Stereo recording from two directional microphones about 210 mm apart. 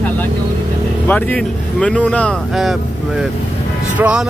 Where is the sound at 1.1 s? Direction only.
5° left (ahead or behind).